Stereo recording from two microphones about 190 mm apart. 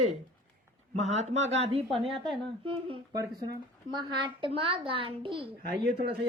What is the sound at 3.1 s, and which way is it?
A woman's voice, 20° right (ahead or behind).